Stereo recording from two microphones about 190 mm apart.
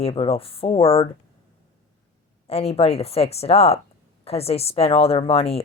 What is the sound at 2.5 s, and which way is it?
Speech, 30° left (ahead or behind).